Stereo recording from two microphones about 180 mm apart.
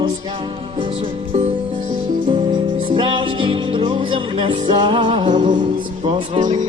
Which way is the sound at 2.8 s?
30° right (ahead or behind).